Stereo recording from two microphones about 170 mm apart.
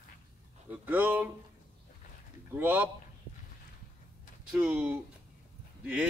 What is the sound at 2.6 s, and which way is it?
Speech, 10° right (ahead or behind).